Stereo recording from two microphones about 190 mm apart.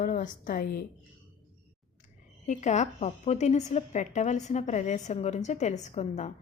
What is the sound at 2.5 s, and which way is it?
A woman's voice, 40° left (ahead or behind).